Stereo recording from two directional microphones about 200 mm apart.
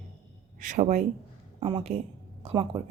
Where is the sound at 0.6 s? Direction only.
40° right (ahead or behind).